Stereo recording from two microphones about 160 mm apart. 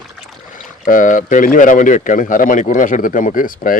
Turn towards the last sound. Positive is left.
turn(degrees=60)  # may be behind; listen again after turning